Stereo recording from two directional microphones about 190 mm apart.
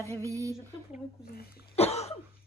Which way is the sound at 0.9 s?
55° left (ahead or behind).